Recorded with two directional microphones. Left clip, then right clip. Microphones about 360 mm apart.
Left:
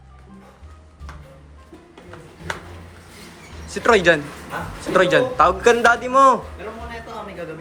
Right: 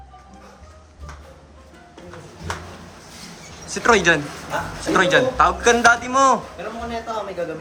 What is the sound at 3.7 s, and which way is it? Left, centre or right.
A man's voice, centre.